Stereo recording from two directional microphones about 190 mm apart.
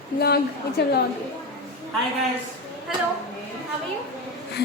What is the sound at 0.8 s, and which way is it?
Speech, 60° left (ahead or behind).